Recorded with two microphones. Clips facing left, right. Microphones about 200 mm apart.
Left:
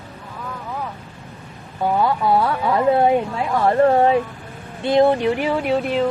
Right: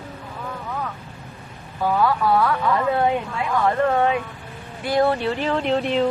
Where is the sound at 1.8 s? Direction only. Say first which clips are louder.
Left 1 dB; 25° left (ahead or behind).